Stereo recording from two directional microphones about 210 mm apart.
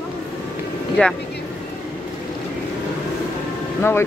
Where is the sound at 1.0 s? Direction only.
5° left (ahead or behind).